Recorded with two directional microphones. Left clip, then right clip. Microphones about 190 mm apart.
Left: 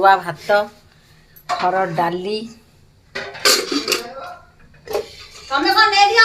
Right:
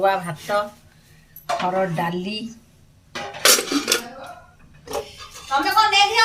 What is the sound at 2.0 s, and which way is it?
Speech, 10° left (ahead or behind).